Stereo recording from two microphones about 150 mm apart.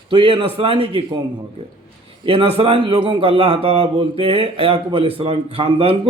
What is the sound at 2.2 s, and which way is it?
A man's voice, 40° right (ahead or behind).